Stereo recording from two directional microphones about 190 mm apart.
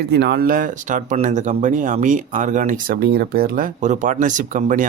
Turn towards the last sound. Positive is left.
turn(degrees=-40)  # may be behind; listen again after turning